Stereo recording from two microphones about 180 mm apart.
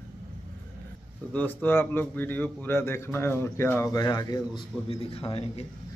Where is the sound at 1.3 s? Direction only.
10° left (ahead or behind).